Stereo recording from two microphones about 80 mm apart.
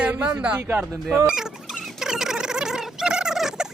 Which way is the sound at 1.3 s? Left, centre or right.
Centre.